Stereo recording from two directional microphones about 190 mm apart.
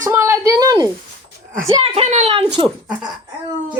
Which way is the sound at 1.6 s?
30° right (ahead or behind).